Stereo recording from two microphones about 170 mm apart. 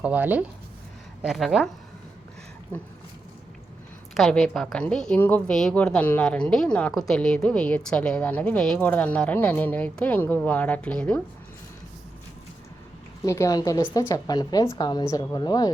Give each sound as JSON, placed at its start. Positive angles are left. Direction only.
{"t": 0.0, "sound": "speech", "side_deg": -10}
{"t": 4.1, "sound": "a woman's voice", "side_deg": 5}
{"t": 13.2, "sound": "a woman's voice", "side_deg": 20}